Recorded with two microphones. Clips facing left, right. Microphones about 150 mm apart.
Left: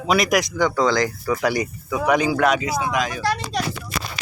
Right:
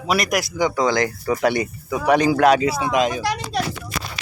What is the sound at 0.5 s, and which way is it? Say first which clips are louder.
Speech: right 3 dB; 15° right (ahead or behind).